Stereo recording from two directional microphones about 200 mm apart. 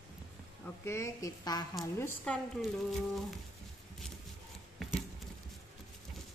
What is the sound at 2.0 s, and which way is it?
Speech, 5° left (ahead or behind).